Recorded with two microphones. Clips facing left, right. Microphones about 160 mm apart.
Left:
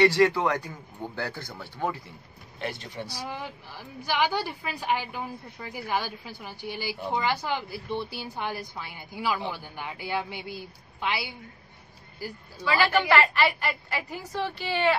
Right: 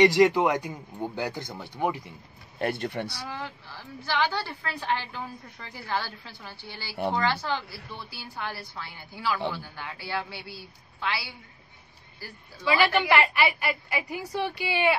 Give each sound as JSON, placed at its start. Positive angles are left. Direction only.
{"t": 0.0, "sound": "speech", "side_deg": -15}
{"t": 2.6, "sound": "speech", "side_deg": -55}
{"t": 3.3, "sound": "a woman's voice", "side_deg": 15}
{"t": 12.6, "sound": "speech", "side_deg": -15}